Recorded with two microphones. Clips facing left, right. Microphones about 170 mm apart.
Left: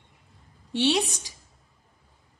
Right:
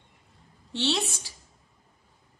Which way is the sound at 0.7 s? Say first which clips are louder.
Left 5 dB; 15° left (ahead or behind).